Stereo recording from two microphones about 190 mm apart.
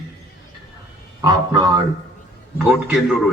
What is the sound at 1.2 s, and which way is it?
Speech, 20° right (ahead or behind).